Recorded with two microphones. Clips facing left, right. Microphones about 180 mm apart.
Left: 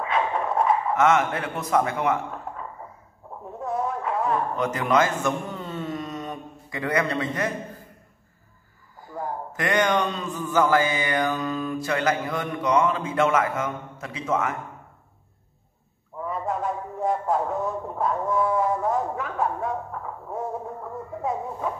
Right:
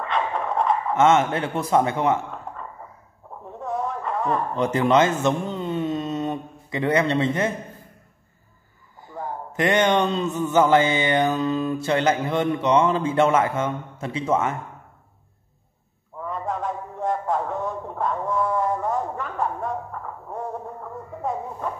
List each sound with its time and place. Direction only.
0.0 s dog: 5° left (ahead or behind)
0.9 s mantra: 25° right (ahead or behind)
3.5 s a sound: centre (ahead or behind)
4.6 s a man's voice: 30° right (ahead or behind)
9.5 s mantra: 25° right (ahead or behind)
16.3 s a sound: 5° left (ahead or behind)